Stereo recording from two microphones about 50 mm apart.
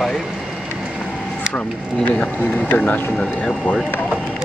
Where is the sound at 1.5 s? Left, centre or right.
Left.